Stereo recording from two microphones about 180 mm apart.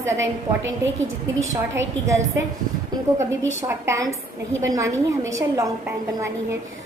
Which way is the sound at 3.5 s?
15° right (ahead or behind).